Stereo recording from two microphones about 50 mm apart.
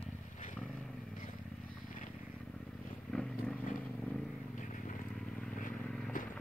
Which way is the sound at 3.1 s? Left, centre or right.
Left.